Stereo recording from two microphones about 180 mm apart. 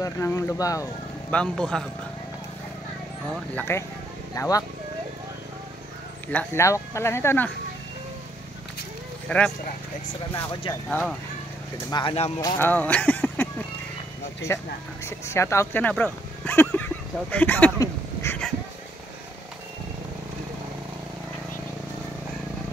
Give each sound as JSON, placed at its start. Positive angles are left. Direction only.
{"t": 0.0, "sound": "speech", "side_deg": 15}
{"t": 1.3, "sound": "a man's voice", "side_deg": 5}
{"t": 3.5, "sound": "speech", "side_deg": 15}
{"t": 6.2, "sound": "speech", "side_deg": 10}
{"t": 9.3, "sound": "a man's voice", "side_deg": 5}
{"t": 10.7, "sound": "a man's voice", "side_deg": 5}
{"t": 11.9, "sound": "speech", "side_deg": 25}
{"t": 14.5, "sound": "speech", "side_deg": 15}